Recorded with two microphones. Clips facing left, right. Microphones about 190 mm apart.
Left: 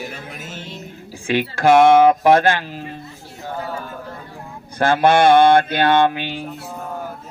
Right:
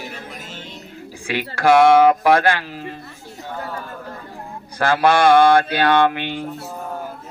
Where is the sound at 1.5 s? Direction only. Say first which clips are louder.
Left 1 dB; 20° left (ahead or behind).